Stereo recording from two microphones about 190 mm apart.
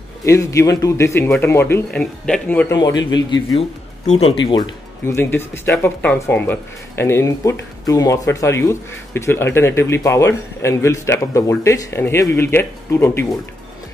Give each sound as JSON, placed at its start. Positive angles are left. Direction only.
{"t": 0.2, "sound": "speech", "side_deg": 15}
{"t": 2.7, "sound": "speech", "side_deg": 20}
{"t": 5.0, "sound": "speech", "side_deg": 10}